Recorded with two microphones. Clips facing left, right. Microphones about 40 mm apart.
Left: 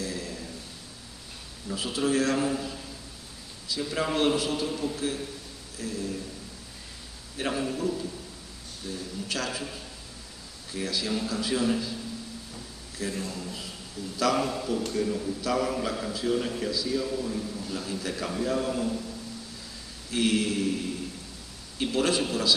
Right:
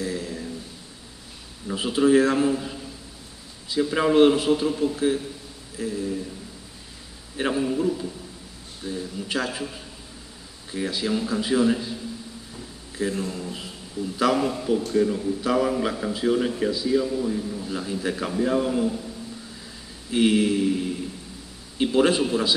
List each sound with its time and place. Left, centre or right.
0.0 s a sound: right
1.7 s a man's voice: right
7.4 s a man's voice: right
8.8 s a man's voice: right
10.7 s a man's voice: right
20.1 s a man's voice: right
21.7 s a man's voice: right